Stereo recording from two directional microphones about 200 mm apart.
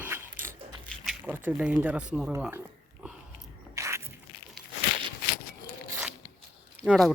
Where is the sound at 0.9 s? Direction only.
Centre (ahead or behind).